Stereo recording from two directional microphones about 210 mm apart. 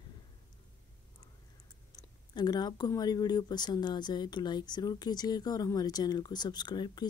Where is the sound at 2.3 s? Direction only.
20° left (ahead or behind).